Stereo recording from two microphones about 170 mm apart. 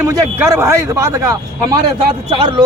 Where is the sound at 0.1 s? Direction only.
15° right (ahead or behind).